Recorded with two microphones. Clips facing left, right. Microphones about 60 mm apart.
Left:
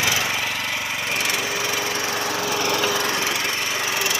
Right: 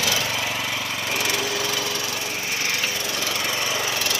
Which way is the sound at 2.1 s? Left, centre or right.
Left.